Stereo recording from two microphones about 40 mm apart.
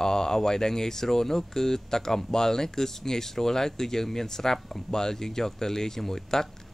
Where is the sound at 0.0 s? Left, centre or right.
Centre.